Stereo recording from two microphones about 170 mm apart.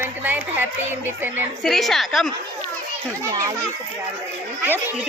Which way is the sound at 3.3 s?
20° right (ahead or behind).